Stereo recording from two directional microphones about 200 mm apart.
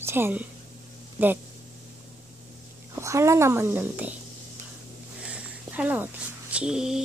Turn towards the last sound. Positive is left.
turn(degrees=-5)  # may be behind; listen again after turning